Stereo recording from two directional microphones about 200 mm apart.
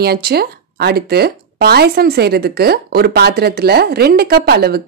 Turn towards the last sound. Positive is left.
turn(degrees=-50)  # may be behind; listen again after turning